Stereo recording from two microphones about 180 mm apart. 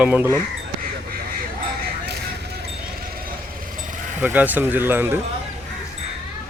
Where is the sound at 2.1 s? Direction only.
65° right (ahead or behind).